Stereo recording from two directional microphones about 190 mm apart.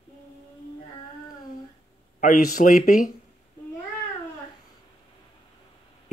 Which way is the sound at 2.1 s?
45° left (ahead or behind).